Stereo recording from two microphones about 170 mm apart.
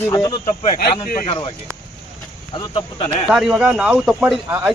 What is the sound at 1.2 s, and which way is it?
Speech, 35° left (ahead or behind).